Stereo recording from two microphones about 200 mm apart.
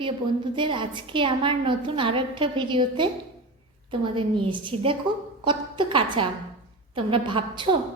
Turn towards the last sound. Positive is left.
turn(degrees=-25)  # may be behind; listen again after turning